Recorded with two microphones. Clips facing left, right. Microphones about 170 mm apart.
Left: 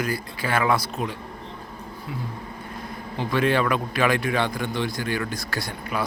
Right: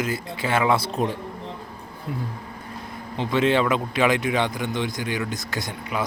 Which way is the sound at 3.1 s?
20° right (ahead or behind).